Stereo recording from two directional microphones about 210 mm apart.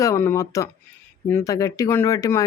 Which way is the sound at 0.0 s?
15° left (ahead or behind).